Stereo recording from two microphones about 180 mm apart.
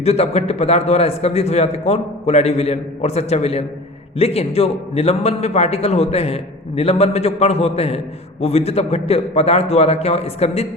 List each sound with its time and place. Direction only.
0.0 s a man's voice: 35° left (ahead or behind)